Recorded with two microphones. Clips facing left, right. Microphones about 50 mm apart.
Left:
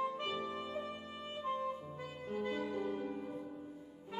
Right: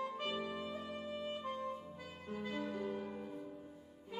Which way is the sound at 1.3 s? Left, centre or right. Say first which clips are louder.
Left 3 dB; centre.